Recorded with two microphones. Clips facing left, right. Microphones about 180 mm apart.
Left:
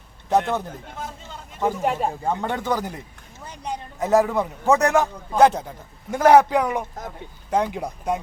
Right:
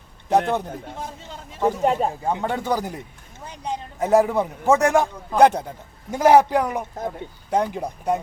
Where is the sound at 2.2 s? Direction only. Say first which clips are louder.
Right 1 dB; 15° right (ahead or behind).